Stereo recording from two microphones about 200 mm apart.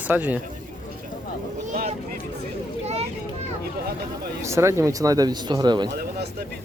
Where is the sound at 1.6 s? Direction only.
35° right (ahead or behind).